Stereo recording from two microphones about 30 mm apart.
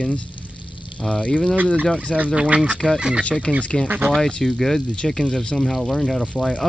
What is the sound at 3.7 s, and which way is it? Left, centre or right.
Speech, centre.